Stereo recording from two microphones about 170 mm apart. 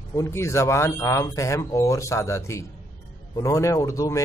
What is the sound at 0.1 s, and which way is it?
A man's voice, 15° left (ahead or behind).